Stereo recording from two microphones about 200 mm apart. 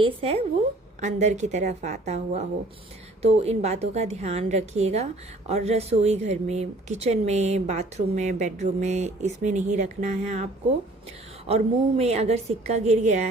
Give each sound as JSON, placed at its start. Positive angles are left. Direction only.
{"t": 0.0, "sound": "speech", "side_deg": -30}